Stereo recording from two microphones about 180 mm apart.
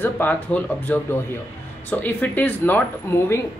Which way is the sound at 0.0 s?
10° left (ahead or behind).